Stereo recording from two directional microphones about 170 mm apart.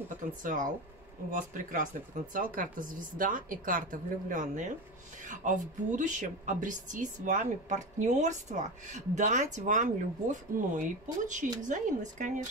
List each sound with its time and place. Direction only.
0.4 s a woman's voice: 50° right (ahead or behind)